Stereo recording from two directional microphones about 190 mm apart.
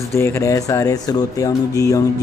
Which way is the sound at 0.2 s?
15° left (ahead or behind).